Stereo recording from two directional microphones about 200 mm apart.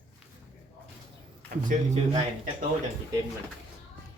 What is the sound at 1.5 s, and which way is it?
Speech, 40° right (ahead or behind).